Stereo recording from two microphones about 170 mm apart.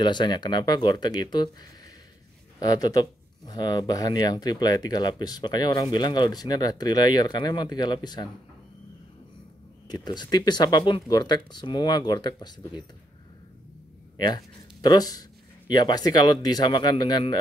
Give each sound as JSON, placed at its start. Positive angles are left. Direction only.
{"t": 0.0, "sound": "speech", "side_deg": 25}
{"t": 9.8, "sound": "speech", "side_deg": 25}
{"t": 14.1, "sound": "speech", "side_deg": 25}